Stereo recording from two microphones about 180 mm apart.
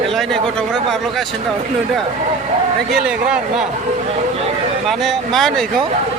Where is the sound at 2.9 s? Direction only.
5° right (ahead or behind).